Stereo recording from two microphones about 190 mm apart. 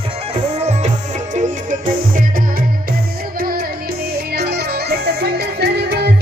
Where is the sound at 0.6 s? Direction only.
35° right (ahead or behind); by 6.2 s 60° right (ahead or behind).